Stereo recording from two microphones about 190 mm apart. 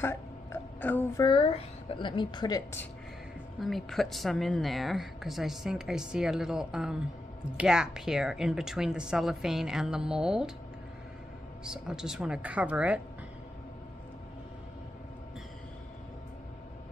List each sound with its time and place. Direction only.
0.0 s a sound: 10° left (ahead or behind)
1.2 s a woman's voice: 25° left (ahead or behind)
3.6 s speech: centre (ahead or behind)
11.6 s speech: 5° right (ahead or behind)